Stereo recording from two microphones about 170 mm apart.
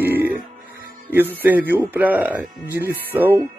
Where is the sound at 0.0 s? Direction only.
10° right (ahead or behind).